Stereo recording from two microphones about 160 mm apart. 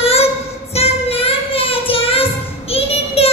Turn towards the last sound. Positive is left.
turn(degrees=40)  # may be behind; listen again after turning